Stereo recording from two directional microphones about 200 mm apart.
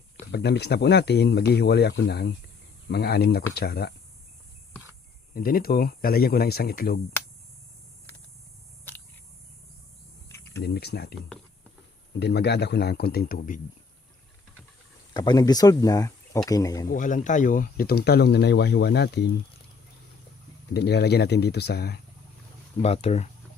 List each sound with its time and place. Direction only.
0.3 s speech: 55° left (ahead or behind)
5.3 s speech: 45° left (ahead or behind)
10.2 s cricket: 15° left (ahead or behind)
10.6 s speech: 55° left (ahead or behind)
12.2 s speech: 55° left (ahead or behind)
15.1 s speech: 20° left (ahead or behind)
16.9 s speech: 40° left (ahead or behind); by 19.2 s 55° left (ahead or behind)
20.7 s speech: 55° left (ahead or behind)
22.8 s speech: 30° left (ahead or behind)